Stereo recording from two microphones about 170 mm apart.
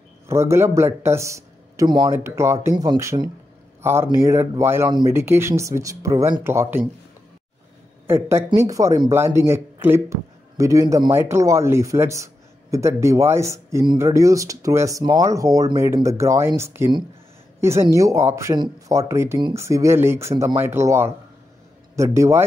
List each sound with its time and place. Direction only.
0.3 s speech: 15° right (ahead or behind)
8.1 s speech: 15° right (ahead or behind)